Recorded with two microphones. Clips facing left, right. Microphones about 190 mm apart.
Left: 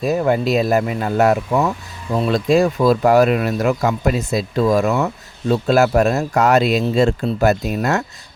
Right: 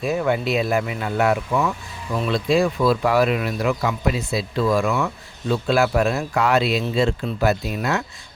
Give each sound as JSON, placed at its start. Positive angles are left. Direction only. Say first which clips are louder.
{"t": 0.0, "sound": "speech", "louder": "left 4 dB", "side_deg": 40}